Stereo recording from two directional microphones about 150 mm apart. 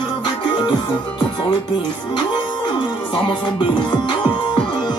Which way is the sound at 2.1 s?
30° left (ahead or behind).